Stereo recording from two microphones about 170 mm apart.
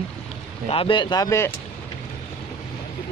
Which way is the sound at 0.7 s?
30° left (ahead or behind).